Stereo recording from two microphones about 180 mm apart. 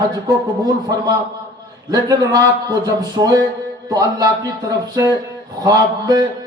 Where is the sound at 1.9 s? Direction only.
20° right (ahead or behind).